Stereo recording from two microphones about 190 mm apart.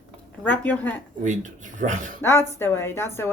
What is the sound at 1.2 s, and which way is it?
Speech, 40° right (ahead or behind).